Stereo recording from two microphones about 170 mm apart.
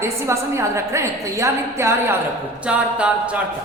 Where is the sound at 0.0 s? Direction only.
15° right (ahead or behind).